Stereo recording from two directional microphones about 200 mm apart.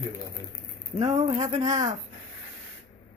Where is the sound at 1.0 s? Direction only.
35° right (ahead or behind).